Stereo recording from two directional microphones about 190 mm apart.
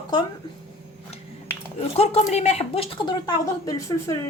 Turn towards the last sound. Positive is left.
turn(degrees=20)  # may be behind; listen again after turning